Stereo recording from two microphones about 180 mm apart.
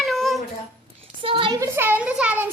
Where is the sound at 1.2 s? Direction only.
30° right (ahead or behind); by 2.5 s 10° right (ahead or behind).